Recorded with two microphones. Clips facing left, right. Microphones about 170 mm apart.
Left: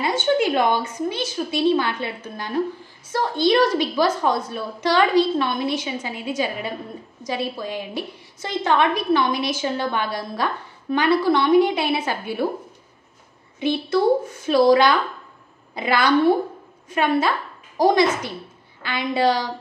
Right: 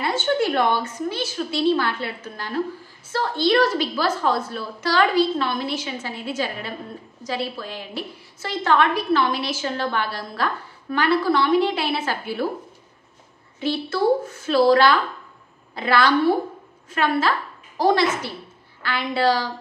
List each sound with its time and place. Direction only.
0.2 s a woman's voice: 15° left (ahead or behind)
13.6 s a woman's voice: 15° left (ahead or behind)